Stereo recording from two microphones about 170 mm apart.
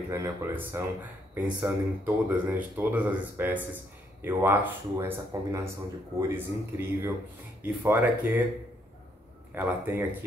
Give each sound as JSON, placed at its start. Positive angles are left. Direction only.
{"t": 0.1, "sound": "speech", "side_deg": -15}
{"t": 2.2, "sound": "speech", "side_deg": -10}
{"t": 9.6, "sound": "speech", "side_deg": -10}